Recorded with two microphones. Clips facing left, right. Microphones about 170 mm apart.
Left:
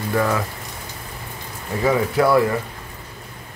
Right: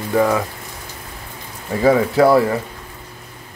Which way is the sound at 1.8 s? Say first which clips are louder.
Right 5 dB; 30° right (ahead or behind).